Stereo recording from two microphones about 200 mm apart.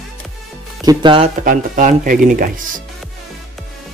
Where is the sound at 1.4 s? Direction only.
40° right (ahead or behind).